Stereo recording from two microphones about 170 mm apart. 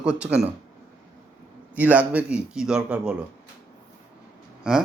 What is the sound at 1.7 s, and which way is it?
A man's voice, 10° right (ahead or behind).